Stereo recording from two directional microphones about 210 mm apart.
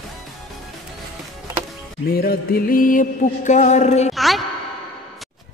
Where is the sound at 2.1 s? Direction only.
45° left (ahead or behind).